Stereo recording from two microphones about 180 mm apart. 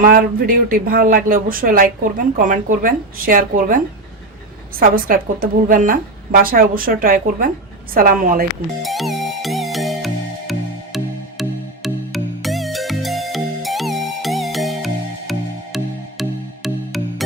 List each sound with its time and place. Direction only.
0.0 s speech: 50° right (ahead or behind)
4.8 s speech: 50° right (ahead or behind)
8.8 s music: centre (ahead or behind)